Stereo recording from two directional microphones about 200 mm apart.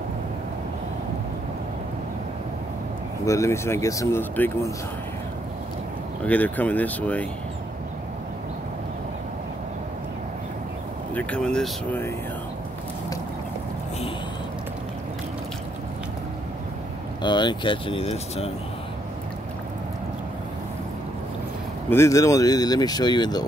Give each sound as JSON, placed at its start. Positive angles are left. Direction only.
{"t": 3.3, "sound": "speech", "side_deg": 15}
{"t": 6.2, "sound": "speech", "side_deg": 10}
{"t": 11.1, "sound": "speech", "side_deg": 5}
{"t": 17.2, "sound": "speech", "side_deg": 20}
{"t": 21.9, "sound": "speech", "side_deg": 15}